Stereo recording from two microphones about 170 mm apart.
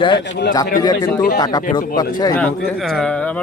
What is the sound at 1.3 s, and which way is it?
Speech, 20° left (ahead or behind).